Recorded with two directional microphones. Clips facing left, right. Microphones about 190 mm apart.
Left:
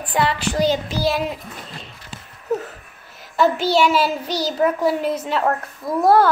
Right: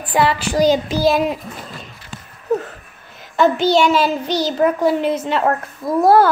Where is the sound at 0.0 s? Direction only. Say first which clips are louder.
Right 3 dB; 10° right (ahead or behind).